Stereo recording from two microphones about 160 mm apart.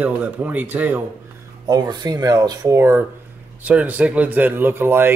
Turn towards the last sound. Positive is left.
turn(degrees=-15)  # may be behind; listen again after turning